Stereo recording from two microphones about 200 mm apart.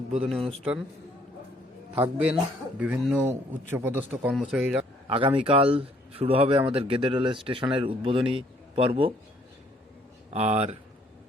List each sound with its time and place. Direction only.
0.1 s a man's voice: centre (ahead or behind)
2.0 s speech: 5° right (ahead or behind)
5.0 s a man's voice: 30° right (ahead or behind)
10.3 s speech: 35° right (ahead or behind)